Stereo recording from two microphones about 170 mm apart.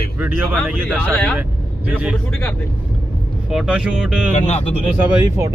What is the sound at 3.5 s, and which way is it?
Speech, 5° right (ahead or behind).